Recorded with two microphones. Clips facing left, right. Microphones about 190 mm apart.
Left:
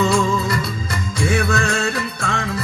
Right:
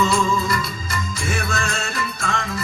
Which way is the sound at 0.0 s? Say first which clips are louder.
Left 2 dB; 65° left (ahead or behind).